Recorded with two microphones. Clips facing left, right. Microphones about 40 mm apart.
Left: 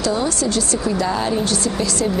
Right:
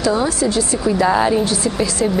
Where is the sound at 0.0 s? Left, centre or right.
Centre.